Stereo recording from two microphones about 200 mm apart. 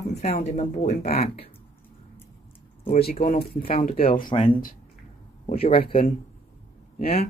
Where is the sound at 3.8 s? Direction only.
30° left (ahead or behind).